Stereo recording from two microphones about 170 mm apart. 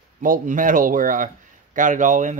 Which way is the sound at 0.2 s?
50° right (ahead or behind).